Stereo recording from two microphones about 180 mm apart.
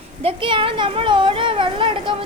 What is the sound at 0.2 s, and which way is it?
Speech, 30° right (ahead or behind).